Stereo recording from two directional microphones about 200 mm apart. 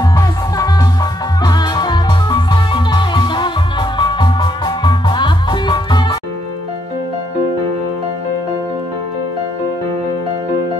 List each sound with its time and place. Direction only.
1.4 s music: 20° left (ahead or behind)